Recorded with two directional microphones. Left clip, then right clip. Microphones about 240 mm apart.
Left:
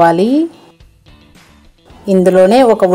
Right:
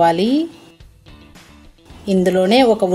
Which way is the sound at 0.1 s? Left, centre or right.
Centre.